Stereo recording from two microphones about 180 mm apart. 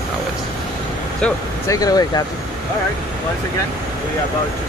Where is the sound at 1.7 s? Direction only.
20° left (ahead or behind).